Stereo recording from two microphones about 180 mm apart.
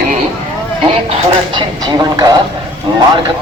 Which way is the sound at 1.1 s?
25° right (ahead or behind).